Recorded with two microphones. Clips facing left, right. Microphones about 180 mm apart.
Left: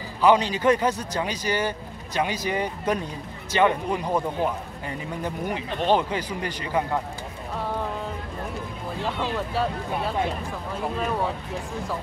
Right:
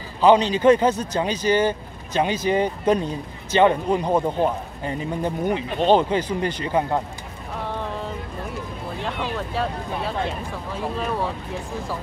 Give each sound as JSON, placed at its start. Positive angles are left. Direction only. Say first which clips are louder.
{"t": 0.2, "sound": "a man's voice", "louder": "right 4 dB", "side_deg": -25}
{"t": 11.0, "sound": "speech", "louder": "right 1 dB", "side_deg": 0}